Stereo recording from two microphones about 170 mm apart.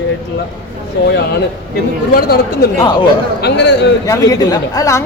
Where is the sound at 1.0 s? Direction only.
90° left.